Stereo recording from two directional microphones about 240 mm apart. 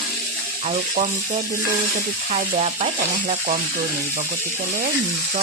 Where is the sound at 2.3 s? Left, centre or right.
Right.